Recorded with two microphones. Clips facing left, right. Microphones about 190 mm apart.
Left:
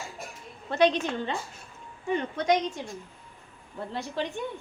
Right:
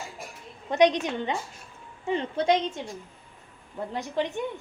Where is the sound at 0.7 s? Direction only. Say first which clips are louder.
Right 2 dB; 15° right (ahead or behind).